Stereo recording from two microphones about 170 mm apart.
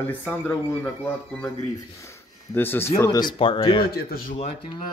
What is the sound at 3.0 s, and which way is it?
Speech, 25° left (ahead or behind).